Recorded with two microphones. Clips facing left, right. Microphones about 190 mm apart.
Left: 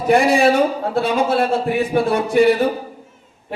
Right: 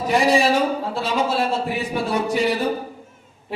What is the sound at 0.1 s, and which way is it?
Speech, 55° left (ahead or behind).